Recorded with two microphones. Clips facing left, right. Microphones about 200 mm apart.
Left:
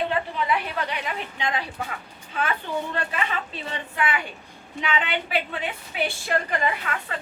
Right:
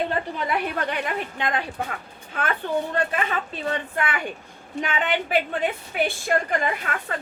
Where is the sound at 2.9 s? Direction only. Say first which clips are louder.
Right 3 dB; 45° right (ahead or behind).